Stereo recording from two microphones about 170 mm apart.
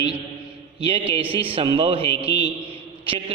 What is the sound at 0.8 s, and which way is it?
A man's voice, 35° right (ahead or behind).